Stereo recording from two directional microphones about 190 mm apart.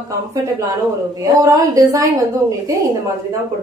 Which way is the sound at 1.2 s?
20° right (ahead or behind).